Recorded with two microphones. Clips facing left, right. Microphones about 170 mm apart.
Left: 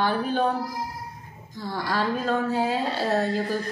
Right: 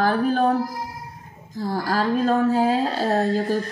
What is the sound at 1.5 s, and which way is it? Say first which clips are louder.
A woman's voice: right 4 dB; 35° right (ahead or behind).